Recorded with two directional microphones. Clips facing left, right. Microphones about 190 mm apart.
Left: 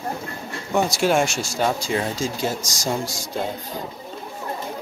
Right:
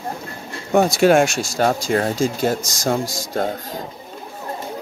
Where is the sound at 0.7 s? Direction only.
60° right (ahead or behind).